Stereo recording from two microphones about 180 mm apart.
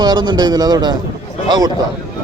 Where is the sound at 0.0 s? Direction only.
25° right (ahead or behind).